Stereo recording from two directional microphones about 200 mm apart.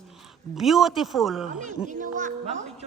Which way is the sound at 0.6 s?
Centre (ahead or behind).